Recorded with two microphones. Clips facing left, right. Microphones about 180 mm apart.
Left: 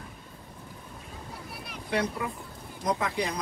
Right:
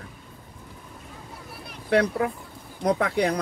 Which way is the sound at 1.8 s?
65° right (ahead or behind).